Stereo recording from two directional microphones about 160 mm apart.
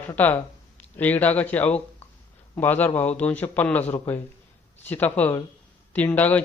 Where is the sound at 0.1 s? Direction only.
10° left (ahead or behind).